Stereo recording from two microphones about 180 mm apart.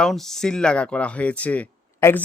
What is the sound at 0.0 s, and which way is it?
Speech, centre (ahead or behind).